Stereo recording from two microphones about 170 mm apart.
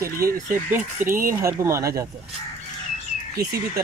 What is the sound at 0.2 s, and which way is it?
Speech, 60° right (ahead or behind).